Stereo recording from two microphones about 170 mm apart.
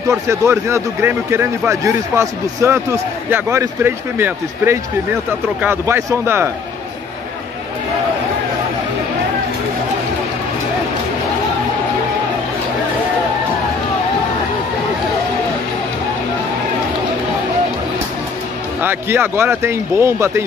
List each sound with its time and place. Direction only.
0.1 s speech: 15° right (ahead or behind)
18.8 s speech: 10° right (ahead or behind)